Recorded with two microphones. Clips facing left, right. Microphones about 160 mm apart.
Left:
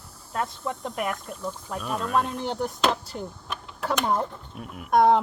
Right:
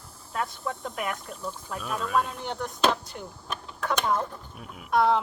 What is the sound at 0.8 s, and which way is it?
Speech, 35° left (ahead or behind).